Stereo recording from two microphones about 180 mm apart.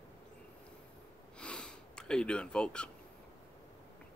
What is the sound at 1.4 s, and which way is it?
Gasp, 5° left (ahead or behind).